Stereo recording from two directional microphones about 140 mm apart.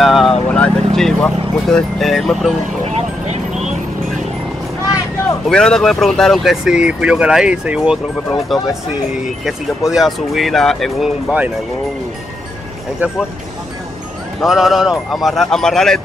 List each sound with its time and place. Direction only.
0.0 s speech: centre (ahead or behind)
2.8 s vehicle: 50° right (ahead or behind)
5.5 s speech: 5° left (ahead or behind)
9.4 s speech: 5° right (ahead or behind)
14.4 s speech: centre (ahead or behind)